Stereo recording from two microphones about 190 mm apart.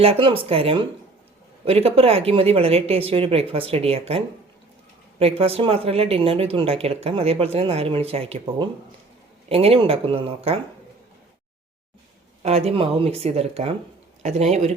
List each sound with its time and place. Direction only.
0.0 s speech: 30° right (ahead or behind)
5.2 s speech: 30° right (ahead or behind)
12.4 s speech: 35° right (ahead or behind)